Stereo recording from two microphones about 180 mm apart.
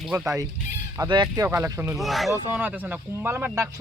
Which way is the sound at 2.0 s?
Centre (ahead or behind).